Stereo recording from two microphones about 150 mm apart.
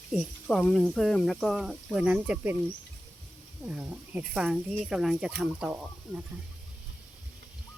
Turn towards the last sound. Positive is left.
turn(degrees=-10)  # may be behind; listen again after turning